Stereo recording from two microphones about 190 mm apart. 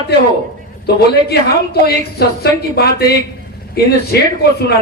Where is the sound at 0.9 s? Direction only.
60° left (ahead or behind).